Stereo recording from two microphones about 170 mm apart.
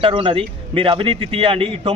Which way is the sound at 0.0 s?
30° right (ahead or behind).